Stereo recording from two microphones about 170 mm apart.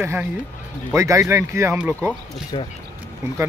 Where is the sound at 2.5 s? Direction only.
30° left (ahead or behind).